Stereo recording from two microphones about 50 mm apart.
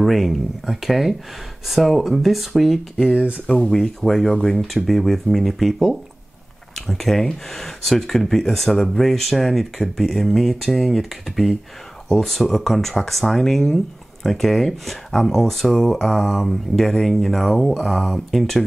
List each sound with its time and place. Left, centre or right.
0.0 s speech: centre
3.2 s speech: right
3.7 s speech: centre